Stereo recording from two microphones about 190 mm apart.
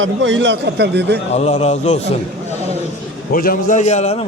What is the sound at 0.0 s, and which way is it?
Speech, 90° right.